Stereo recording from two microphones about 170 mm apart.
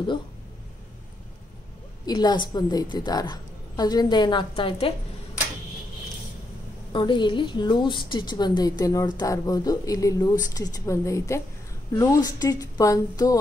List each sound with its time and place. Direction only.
2.0 s a woman's voice: 25° left (ahead or behind)
6.9 s a woman's voice: 30° left (ahead or behind)